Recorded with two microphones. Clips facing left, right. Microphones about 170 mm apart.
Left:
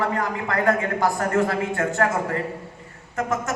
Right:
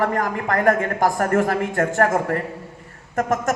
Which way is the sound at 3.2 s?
45° right (ahead or behind).